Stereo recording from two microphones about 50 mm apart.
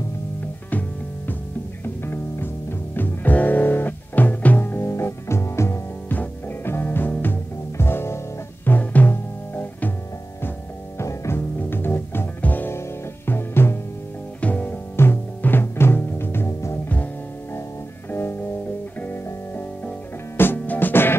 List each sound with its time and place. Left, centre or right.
0.7 s music: left
2.0 s music: left
3.0 s music: left
6.0 s music: left
7.7 s music: left
8.6 s music: left
11.0 s music: left
12.4 s music: left
12.7 s music: left
14.4 s music: left
15.0 s music: left
18.1 s music: left
18.9 s music: left